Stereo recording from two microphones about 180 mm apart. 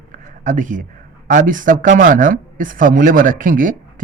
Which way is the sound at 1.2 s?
45° right (ahead or behind).